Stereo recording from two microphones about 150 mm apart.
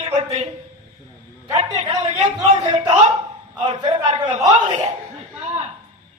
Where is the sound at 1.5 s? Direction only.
45° right (ahead or behind).